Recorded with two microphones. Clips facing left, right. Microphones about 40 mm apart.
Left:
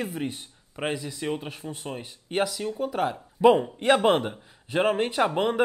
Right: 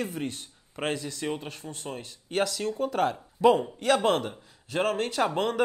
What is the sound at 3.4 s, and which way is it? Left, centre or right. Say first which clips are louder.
A man's voice: left 3 dB; left.